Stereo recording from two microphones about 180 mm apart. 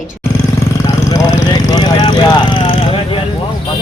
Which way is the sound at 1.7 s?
25° left (ahead or behind).